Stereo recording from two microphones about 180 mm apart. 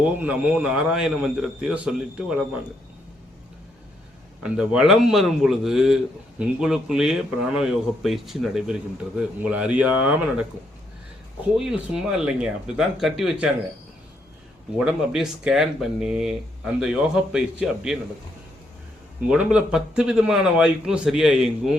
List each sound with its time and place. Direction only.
0.0 s a man's voice: 10° right (ahead or behind)
4.4 s a man's voice: 5° right (ahead or behind)
11.5 s a man's voice: 5° right (ahead or behind)
14.8 s a man's voice: 5° right (ahead or behind)
19.3 s a man's voice: 5° right (ahead or behind)